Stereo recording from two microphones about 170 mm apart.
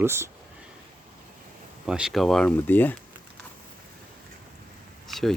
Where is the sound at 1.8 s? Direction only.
5° right (ahead or behind).